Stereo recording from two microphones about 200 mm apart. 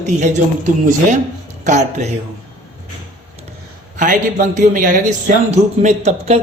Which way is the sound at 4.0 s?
40° right (ahead or behind).